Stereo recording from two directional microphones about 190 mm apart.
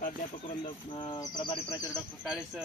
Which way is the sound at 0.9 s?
20° left (ahead or behind).